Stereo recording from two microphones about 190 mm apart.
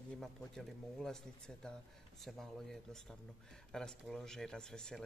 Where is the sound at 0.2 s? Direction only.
Centre (ahead or behind).